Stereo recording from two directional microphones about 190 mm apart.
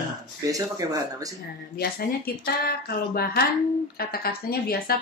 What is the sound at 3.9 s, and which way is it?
Speech, 55° left (ahead or behind).